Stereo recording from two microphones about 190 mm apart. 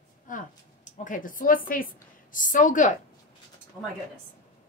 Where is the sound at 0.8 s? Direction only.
40° left (ahead or behind).